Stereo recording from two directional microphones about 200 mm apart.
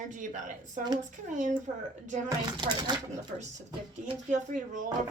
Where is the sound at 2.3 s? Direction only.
20° right (ahead or behind).